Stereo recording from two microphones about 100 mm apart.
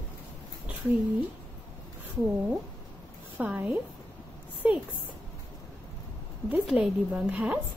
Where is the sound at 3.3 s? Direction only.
15° right (ahead or behind).